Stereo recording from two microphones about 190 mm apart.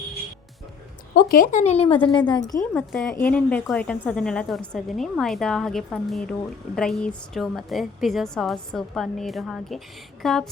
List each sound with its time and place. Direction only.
1.1 s speech: 45° left (ahead or behind); by 2.4 s 25° left (ahead or behind)
2.7 s speech: 5° left (ahead or behind)